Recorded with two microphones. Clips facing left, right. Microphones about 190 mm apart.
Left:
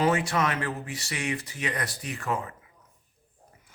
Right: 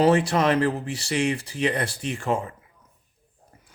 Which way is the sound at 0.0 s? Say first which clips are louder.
Right 6 dB; 35° right (ahead or behind).